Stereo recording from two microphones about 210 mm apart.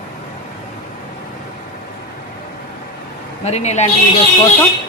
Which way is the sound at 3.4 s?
30° left (ahead or behind).